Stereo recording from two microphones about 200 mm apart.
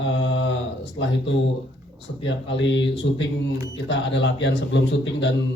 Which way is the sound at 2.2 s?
65° left (ahead or behind).